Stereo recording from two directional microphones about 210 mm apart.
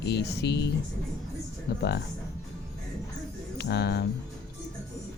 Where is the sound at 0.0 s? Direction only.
50° left (ahead or behind).